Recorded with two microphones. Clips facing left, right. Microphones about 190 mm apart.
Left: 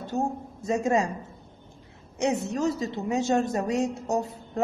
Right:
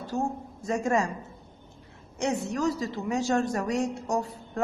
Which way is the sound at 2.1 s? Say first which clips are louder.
Left 2 dB; 20° left (ahead or behind).